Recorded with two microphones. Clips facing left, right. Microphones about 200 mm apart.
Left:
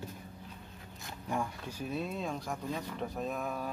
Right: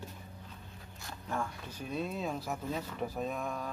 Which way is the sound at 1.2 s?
15° left (ahead or behind).